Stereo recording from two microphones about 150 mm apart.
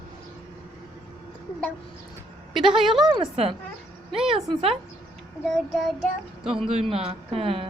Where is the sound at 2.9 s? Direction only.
Centre (ahead or behind).